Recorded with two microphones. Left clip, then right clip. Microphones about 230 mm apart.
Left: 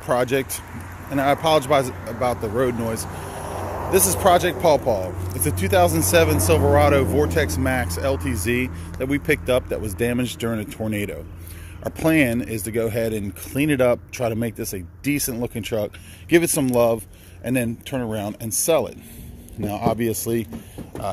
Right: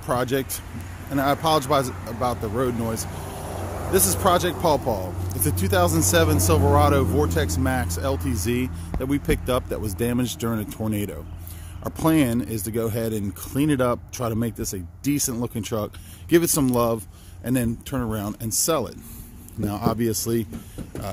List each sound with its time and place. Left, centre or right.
0.0 s speech: centre
4.2 s speech: centre